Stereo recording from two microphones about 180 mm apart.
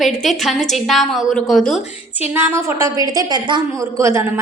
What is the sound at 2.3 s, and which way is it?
A woman's voice, 15° right (ahead or behind).